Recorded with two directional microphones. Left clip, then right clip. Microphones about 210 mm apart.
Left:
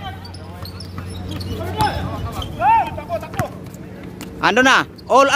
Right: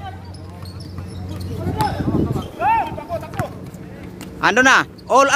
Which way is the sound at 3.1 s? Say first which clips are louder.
Left 3 dB; 5° left (ahead or behind).